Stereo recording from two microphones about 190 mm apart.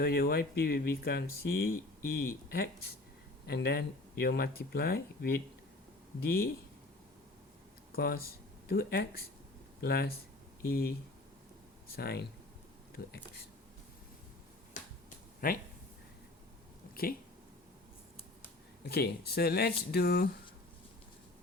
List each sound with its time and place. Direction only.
0.0 s speech: 55° left (ahead or behind)
7.9 s speech: 50° left (ahead or behind)
11.9 s speech: 55° left (ahead or behind)
14.8 s finger snapping: 45° left (ahead or behind)
15.4 s speech: 50° left (ahead or behind)
16.9 s speech: 50° left (ahead or behind)
18.9 s speech: 55° left (ahead or behind)